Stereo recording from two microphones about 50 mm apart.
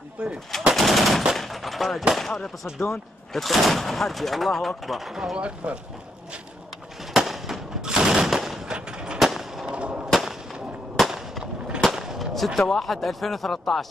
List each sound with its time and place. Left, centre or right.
0.2 s speech: centre
0.7 s speech: centre
1.3 s gunshot: centre
2.1 s speech: centre
5.6 s speech: right
7.2 s fireworks: centre
7.8 s gunshot: centre
9.2 s fireworks: centre
9.7 s a sound: right
10.2 s a sound: centre
12.5 s speech: centre